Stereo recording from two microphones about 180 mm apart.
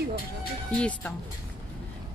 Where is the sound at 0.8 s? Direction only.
5° left (ahead or behind).